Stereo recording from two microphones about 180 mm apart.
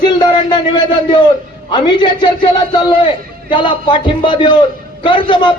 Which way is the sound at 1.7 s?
25° left (ahead or behind).